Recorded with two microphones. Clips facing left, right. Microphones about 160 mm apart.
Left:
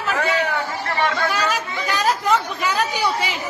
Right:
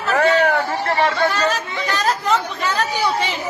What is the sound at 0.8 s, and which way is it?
Speech, 35° right (ahead or behind).